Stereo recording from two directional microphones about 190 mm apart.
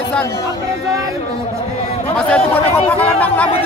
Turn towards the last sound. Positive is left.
turn(degrees=10)  # may be behind; listen again after turning